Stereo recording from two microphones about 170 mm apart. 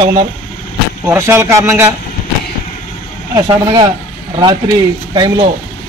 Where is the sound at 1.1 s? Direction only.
15° right (ahead or behind).